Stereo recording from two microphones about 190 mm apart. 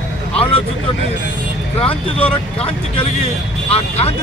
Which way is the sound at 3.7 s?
30° left (ahead or behind).